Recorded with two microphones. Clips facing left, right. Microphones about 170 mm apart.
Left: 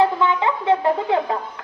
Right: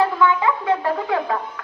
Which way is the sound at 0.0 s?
20° left (ahead or behind).